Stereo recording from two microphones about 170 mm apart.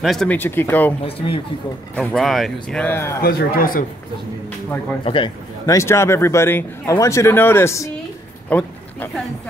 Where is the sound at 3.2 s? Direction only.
60° left (ahead or behind).